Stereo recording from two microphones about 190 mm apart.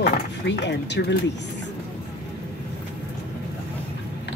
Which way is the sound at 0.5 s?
65° left (ahead or behind).